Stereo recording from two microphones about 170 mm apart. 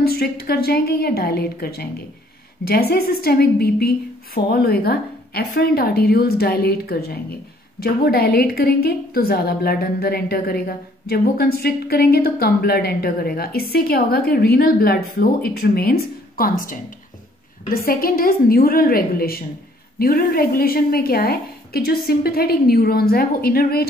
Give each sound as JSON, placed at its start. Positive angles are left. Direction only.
{"t": 0.0, "sound": "a woman's voice", "side_deg": 65}